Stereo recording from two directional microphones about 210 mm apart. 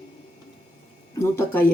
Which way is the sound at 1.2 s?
10° left (ahead or behind).